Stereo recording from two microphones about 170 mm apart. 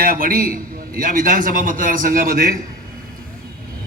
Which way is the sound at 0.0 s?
60° right (ahead or behind).